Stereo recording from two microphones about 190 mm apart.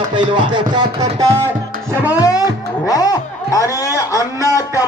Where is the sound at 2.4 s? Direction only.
20° left (ahead or behind).